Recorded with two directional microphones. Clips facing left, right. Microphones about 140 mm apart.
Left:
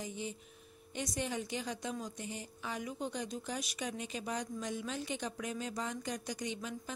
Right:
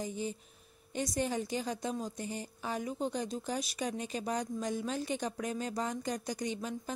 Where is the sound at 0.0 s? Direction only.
40° right (ahead or behind).